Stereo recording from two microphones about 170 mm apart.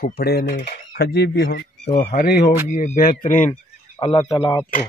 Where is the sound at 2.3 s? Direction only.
65° left (ahead or behind).